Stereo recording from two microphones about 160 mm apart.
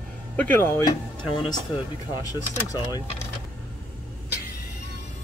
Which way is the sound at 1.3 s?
25° left (ahead or behind).